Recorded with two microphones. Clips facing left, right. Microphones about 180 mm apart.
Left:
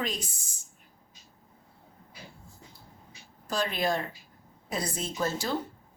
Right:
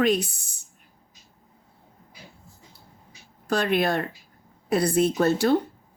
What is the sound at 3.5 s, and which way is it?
A woman's voice, 65° right (ahead or behind).